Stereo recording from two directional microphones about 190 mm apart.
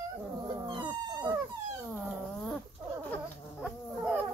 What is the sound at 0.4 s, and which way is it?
Dog, 25° right (ahead or behind).